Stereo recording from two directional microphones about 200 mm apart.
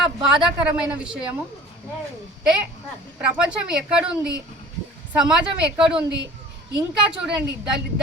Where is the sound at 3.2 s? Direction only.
5° right (ahead or behind).